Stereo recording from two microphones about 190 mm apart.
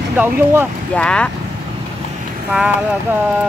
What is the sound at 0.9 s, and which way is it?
Speech, 5° left (ahead or behind).